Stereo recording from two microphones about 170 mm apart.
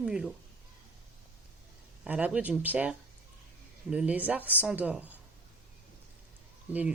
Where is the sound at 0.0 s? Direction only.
5° right (ahead or behind).